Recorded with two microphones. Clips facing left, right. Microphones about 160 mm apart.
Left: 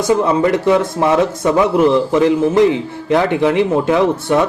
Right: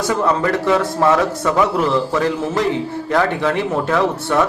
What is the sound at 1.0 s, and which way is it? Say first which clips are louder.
Speech: even; 20° left (ahead or behind).